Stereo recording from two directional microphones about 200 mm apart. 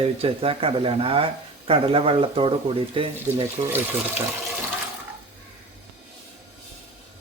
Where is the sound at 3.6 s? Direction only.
10° right (ahead or behind).